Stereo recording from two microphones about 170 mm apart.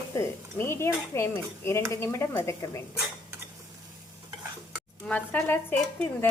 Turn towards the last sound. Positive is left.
turn(degrees=10)  # may be behind; listen again after turning